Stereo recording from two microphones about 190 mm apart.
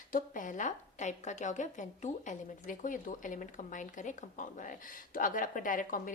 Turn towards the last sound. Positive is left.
turn(degrees=45)  # may be behind; listen again after turning